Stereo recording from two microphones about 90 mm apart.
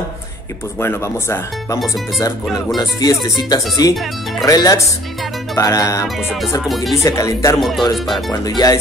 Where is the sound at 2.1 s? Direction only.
40° left (ahead or behind).